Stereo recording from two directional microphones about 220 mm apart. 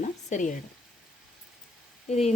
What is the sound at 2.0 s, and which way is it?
Speech, 30° left (ahead or behind).